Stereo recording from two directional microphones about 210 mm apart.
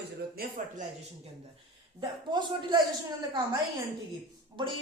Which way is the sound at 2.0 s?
20° right (ahead or behind).